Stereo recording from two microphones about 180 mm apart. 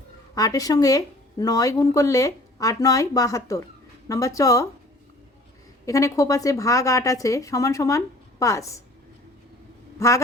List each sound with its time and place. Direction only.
0.3 s a woman's voice: 20° left (ahead or behind)
5.8 s a woman's voice: 20° left (ahead or behind)
10.0 s a woman's voice: 15° left (ahead or behind)